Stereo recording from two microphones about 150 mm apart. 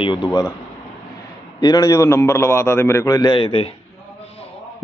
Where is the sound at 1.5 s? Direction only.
30° left (ahead or behind).